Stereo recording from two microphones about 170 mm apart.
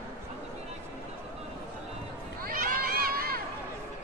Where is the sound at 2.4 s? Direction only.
55° right (ahead or behind).